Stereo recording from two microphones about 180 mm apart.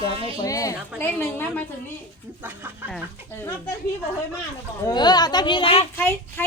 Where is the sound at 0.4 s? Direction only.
20° left (ahead or behind).